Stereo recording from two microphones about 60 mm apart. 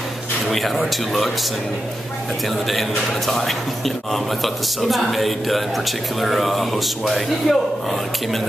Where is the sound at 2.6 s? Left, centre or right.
Centre.